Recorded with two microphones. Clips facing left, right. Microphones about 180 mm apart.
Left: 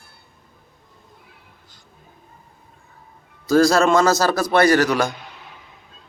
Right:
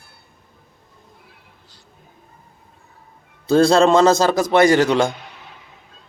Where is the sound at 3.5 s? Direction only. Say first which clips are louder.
Right 2 dB; 30° right (ahead or behind).